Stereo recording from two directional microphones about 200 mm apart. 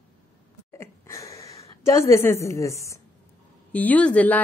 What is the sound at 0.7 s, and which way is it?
Sneeze, 15° left (ahead or behind).